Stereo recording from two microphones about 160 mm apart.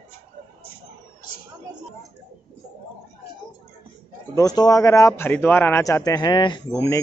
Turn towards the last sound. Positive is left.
turn(degrees=20)  # may be behind; listen again after turning